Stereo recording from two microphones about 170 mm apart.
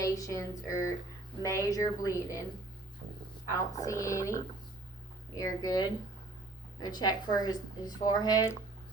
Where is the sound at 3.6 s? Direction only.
20° left (ahead or behind).